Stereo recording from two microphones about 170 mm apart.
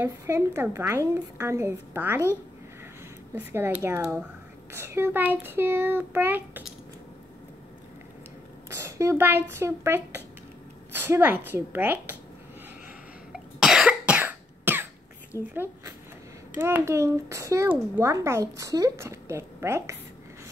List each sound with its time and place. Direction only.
0.6 s a child's voice: 15° right (ahead or behind)
3.3 s a child's voice: 15° right (ahead or behind)
8.6 s a child's voice: 15° right (ahead or behind)
13.3 s cough: 5° right (ahead or behind)
15.5 s a child's voice: 15° right (ahead or behind)